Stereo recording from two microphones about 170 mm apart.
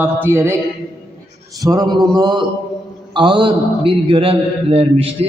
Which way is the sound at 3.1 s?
30° right (ahead or behind).